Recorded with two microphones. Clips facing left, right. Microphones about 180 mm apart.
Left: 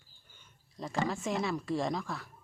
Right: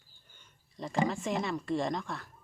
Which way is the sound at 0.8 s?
Centre (ahead or behind).